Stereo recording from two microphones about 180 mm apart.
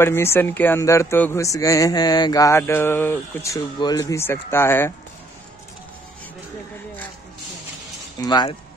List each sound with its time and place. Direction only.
0.0 s speech: 15° left (ahead or behind)
8.2 s speech: 20° left (ahead or behind)